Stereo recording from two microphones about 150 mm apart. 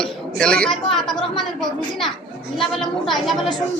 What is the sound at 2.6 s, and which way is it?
Speech, centre (ahead or behind).